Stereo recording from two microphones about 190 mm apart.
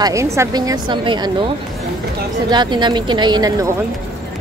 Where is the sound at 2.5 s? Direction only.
25° right (ahead or behind).